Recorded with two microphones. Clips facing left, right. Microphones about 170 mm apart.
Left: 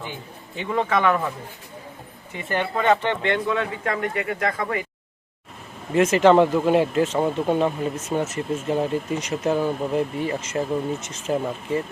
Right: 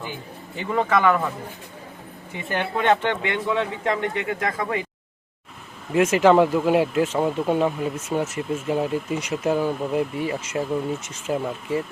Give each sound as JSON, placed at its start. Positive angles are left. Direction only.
{"t": 0.7, "sound": "speech", "side_deg": 0}
{"t": 2.5, "sound": "speech", "side_deg": -15}
{"t": 4.0, "sound": "speech", "side_deg": -25}
{"t": 5.9, "sound": "speech", "side_deg": -5}